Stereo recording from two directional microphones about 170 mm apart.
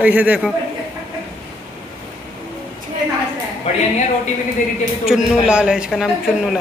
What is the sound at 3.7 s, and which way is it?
Speech, 40° left (ahead or behind).